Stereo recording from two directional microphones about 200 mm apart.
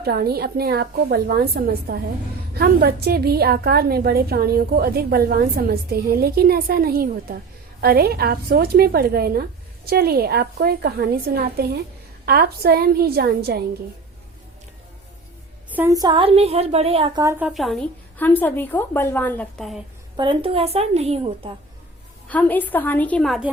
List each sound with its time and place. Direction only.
0.0 s a woman's voice: 50° right (ahead or behind)
15.7 s a woman's voice: 15° right (ahead or behind); by 17.2 s 30° right (ahead or behind)
17.5 s a woman's voice: centre (ahead or behind)
20.1 s a woman's voice: 25° right (ahead or behind)
22.3 s a woman's voice: 10° left (ahead or behind)